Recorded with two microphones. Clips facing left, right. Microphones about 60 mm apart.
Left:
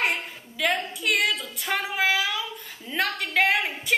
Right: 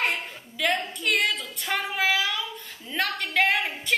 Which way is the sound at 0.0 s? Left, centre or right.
Centre.